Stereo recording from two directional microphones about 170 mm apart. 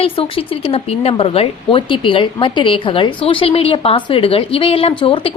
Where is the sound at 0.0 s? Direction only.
35° left (ahead or behind).